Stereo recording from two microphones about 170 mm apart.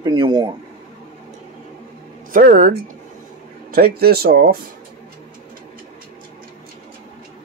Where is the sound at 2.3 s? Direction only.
55° right (ahead or behind).